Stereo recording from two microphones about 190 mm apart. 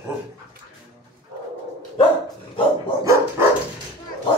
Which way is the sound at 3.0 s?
15° right (ahead or behind).